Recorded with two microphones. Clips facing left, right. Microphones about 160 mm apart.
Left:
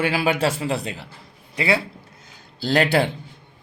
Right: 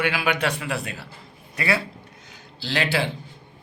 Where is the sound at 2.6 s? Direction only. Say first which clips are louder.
Left 6 dB; 40° left (ahead or behind).